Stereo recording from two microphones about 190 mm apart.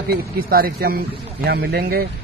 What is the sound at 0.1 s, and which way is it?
Speech, 50° right (ahead or behind).